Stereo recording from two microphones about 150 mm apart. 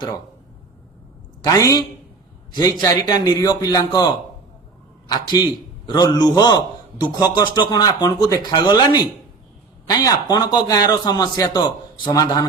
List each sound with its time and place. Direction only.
1.5 s a man's voice: 25° left (ahead or behind)